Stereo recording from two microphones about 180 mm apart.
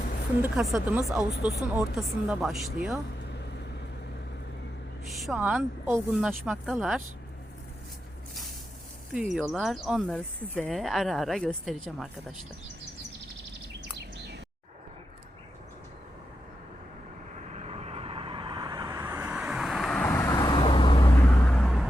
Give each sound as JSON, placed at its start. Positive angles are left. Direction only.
{"t": 0.4, "sound": "speech", "side_deg": 0}
{"t": 3.2, "sound": "vehicle", "side_deg": 70}
{"t": 5.0, "sound": "speech", "side_deg": 0}
{"t": 9.1, "sound": "speech", "side_deg": 0}
{"t": 17.5, "sound": "vehicle", "side_deg": -35}
{"t": 20.1, "sound": "vehicle", "side_deg": 15}
{"t": 21.3, "sound": "vehicle", "side_deg": 5}